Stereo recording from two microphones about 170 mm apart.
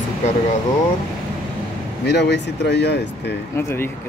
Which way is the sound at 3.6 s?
15° left (ahead or behind).